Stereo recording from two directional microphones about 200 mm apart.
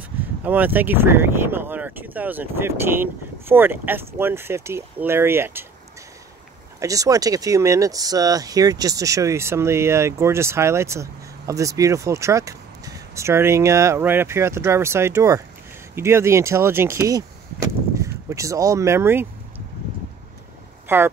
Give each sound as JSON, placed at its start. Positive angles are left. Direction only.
{"t": 0.4, "sound": "speech", "side_deg": -10}
{"t": 6.8, "sound": "speech", "side_deg": -15}
{"t": 20.9, "sound": "speech", "side_deg": -10}